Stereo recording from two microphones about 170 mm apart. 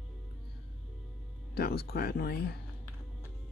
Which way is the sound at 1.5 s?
70° left (ahead or behind).